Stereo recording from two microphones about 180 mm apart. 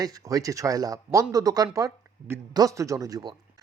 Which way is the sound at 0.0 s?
20° right (ahead or behind).